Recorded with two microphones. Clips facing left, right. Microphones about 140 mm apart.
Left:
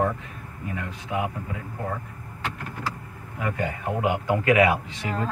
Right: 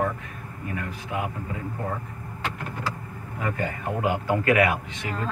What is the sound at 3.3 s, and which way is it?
A man's voice, 10° left (ahead or behind).